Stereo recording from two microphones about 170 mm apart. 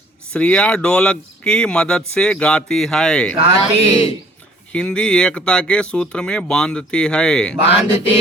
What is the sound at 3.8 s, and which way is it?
Speech, 35° left (ahead or behind).